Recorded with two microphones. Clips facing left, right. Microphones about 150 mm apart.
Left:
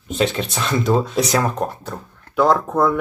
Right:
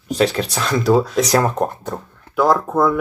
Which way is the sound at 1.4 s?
15° right (ahead or behind).